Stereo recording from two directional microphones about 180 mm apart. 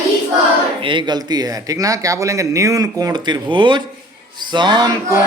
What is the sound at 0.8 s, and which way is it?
Speech, 25° right (ahead or behind).